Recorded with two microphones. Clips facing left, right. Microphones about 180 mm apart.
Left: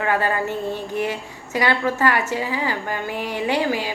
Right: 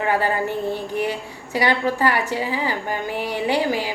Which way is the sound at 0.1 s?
15° right (ahead or behind).